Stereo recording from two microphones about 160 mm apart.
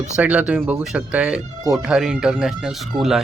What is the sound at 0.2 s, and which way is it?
Speech, 10° right (ahead or behind).